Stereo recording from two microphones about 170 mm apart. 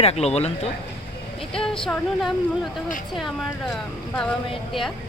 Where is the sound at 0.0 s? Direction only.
40° left (ahead or behind).